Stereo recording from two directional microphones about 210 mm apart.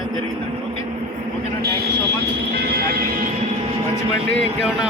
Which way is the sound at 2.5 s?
50° right (ahead or behind).